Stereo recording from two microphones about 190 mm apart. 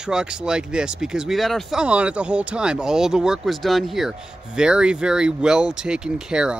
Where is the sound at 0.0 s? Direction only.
5° right (ahead or behind).